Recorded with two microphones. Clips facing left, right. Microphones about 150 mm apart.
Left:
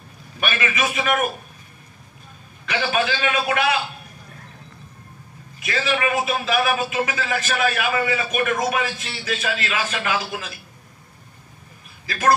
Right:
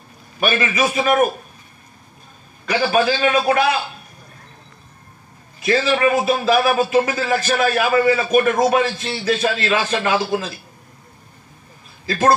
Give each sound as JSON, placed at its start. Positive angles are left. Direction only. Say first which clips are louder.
{"t": 0.4, "sound": "a man's voice", "louder": "right 5 dB", "side_deg": -35}
{"t": 2.6, "sound": "a man's voice", "louder": "right 5 dB", "side_deg": -35}
{"t": 5.6, "sound": "a man's voice", "louder": "right 6 dB", "side_deg": -35}